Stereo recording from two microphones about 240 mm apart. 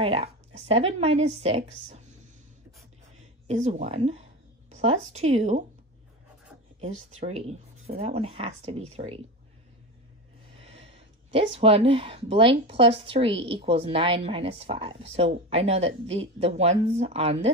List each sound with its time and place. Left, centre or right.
0.0 s speech: right
3.4 s speech: right
6.8 s speech: right
10.6 s a sound: right
11.6 s speech: right